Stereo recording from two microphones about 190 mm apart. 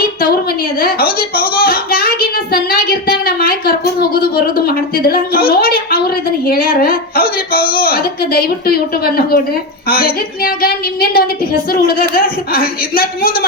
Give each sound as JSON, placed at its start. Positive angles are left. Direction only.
{"t": 0.8, "sound": "a child's voice", "side_deg": 50}